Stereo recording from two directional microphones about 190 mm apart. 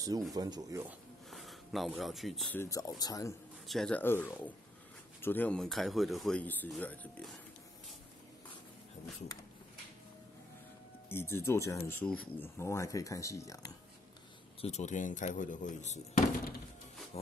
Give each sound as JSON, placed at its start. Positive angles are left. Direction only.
{"t": 0.3, "sound": "speech", "side_deg": -20}
{"t": 1.3, "sound": "speech", "side_deg": 0}
{"t": 2.6, "sound": "speech", "side_deg": 20}
{"t": 3.6, "sound": "speech", "side_deg": 0}
{"t": 11.1, "sound": "speech", "side_deg": 10}
{"t": 14.6, "sound": "speech", "side_deg": 35}